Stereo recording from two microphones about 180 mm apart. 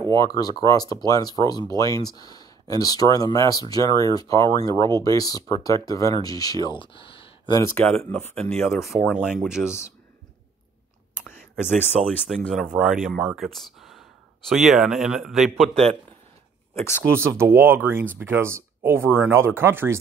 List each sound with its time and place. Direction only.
0.1 s speech: 20° left (ahead or behind)
7.7 s speech: 5° left (ahead or behind)
11.1 s whispering: 10° left (ahead or behind)
11.9 s speech: centre (ahead or behind)
17.1 s speech: 15° right (ahead or behind)